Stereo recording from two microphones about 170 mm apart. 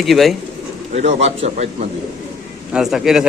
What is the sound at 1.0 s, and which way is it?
Speech, 40° right (ahead or behind).